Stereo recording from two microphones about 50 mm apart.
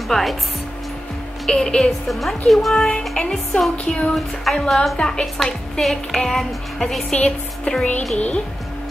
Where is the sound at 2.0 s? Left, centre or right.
Centre.